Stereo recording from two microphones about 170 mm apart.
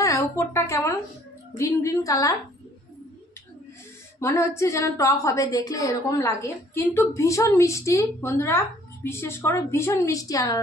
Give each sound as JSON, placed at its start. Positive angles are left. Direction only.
{"t": 0.0, "sound": "a woman's voice", "side_deg": 15}
{"t": 4.2, "sound": "a woman's voice", "side_deg": 15}